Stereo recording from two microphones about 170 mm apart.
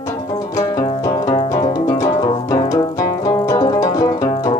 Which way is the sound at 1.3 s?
20° left (ahead or behind).